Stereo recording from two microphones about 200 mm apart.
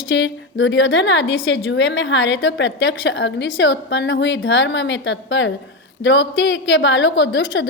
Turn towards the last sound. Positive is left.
turn(degrees=70)  # may be behind; listen again after turning